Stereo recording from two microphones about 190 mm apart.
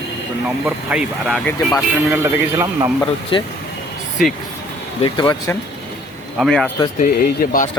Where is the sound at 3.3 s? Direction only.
25° left (ahead or behind).